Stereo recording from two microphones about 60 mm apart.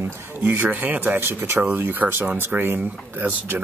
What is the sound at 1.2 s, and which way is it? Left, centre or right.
Speech, right.